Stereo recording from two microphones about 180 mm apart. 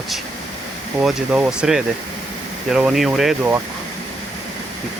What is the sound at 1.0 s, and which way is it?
Speech, 5° right (ahead or behind).